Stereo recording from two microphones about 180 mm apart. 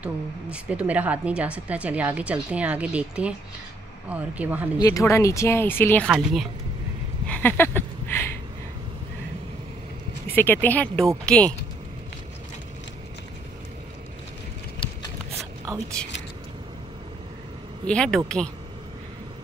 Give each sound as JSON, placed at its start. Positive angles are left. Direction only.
{"t": 0.0, "sound": "speech", "side_deg": -5}
{"t": 4.7, "sound": "speech", "side_deg": 20}
{"t": 6.0, "sound": "speech", "side_deg": 0}
{"t": 7.2, "sound": "a sound", "side_deg": 10}
{"t": 10.2, "sound": "speech", "side_deg": 10}
{"t": 14.8, "sound": "a sound", "side_deg": 30}
{"t": 17.8, "sound": "speech", "side_deg": 5}